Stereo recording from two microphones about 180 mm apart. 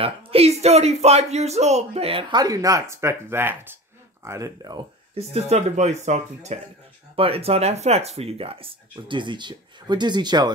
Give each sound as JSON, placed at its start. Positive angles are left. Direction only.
{"t": 0.0, "sound": "speech", "side_deg": -35}
{"t": 5.1, "sound": "speech", "side_deg": -35}